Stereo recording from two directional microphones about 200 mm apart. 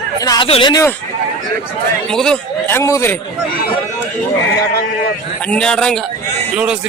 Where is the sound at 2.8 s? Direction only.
15° left (ahead or behind).